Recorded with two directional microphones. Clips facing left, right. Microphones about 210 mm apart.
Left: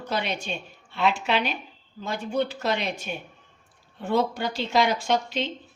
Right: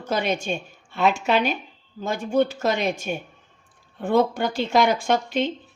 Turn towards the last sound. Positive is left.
turn(degrees=-50)  # may be behind; listen again after turning